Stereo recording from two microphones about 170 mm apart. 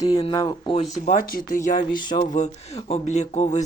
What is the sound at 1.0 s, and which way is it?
Speech, 55° left (ahead or behind).